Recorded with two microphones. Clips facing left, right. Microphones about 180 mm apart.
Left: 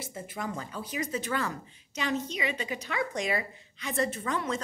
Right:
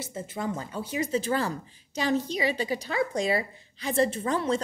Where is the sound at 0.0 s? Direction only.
25° right (ahead or behind).